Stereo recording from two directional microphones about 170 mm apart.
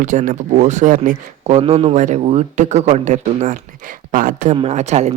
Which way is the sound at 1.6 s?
35° right (ahead or behind).